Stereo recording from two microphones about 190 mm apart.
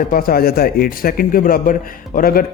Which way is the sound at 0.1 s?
50° left (ahead or behind).